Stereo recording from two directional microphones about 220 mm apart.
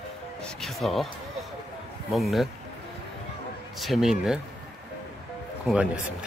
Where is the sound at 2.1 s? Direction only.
Centre (ahead or behind).